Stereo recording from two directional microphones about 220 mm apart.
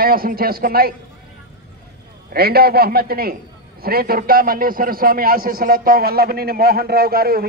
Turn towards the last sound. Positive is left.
turn(degrees=-45)  # may be behind; listen again after turning